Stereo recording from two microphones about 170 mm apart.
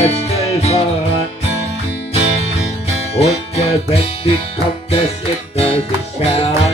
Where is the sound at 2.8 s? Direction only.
40° left (ahead or behind).